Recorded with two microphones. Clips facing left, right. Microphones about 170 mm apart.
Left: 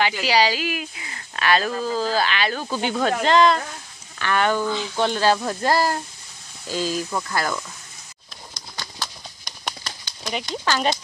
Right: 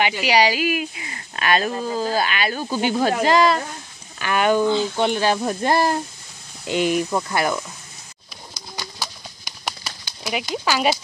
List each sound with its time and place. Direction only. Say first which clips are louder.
0.2 s speech: right 2 dB; 15° right (ahead or behind)
8.7 s horse: right 2 dB; 5° right (ahead or behind)